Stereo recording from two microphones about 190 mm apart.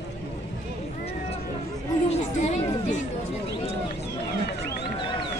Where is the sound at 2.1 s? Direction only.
40° left (ahead or behind).